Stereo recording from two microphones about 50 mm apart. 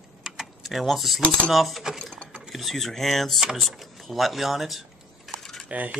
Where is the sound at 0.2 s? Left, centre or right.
Centre.